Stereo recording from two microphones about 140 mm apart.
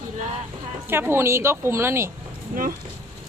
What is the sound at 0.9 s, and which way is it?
Speech, 15° right (ahead or behind).